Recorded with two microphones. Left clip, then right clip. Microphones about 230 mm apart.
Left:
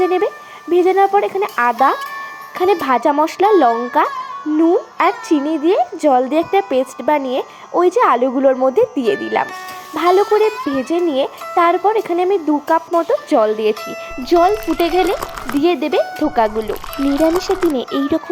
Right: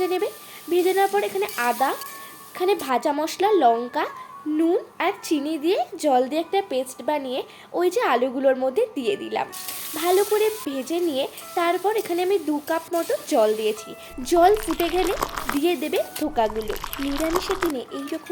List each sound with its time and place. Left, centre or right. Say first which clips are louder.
0.0 s a woman's voice: left 8 dB; left
15.0 s speech: left 5 dB; centre
15.5 s speech: left 9 dB; centre
16.6 s speech: left 9 dB; centre
17.7 s speech: left 12 dB; left